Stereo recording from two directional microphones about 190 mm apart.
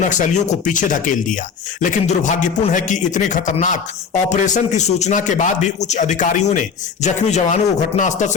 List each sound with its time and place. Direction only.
0.0 s a man's voice: 40° left (ahead or behind)